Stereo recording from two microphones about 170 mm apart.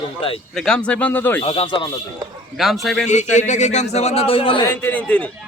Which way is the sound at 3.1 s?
45° left (ahead or behind).